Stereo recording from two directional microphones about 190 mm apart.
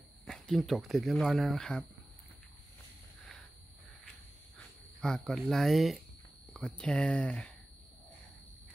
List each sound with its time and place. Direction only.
0.2 s speech: centre (ahead or behind)
4.6 s speech: 5° left (ahead or behind)